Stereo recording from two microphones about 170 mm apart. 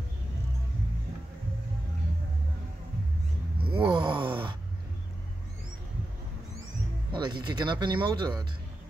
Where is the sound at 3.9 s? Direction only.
30° right (ahead or behind).